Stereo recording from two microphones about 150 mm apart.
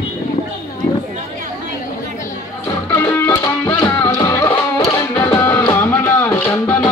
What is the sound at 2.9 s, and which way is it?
Music, 15° left (ahead or behind).